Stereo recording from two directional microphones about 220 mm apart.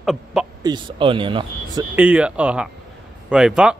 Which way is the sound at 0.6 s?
20° right (ahead or behind).